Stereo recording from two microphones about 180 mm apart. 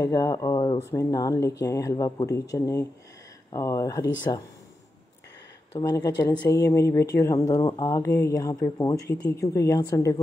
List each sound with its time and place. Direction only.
0.0 s a woman's voice: 20° left (ahead or behind)
5.8 s a woman's voice: 20° left (ahead or behind)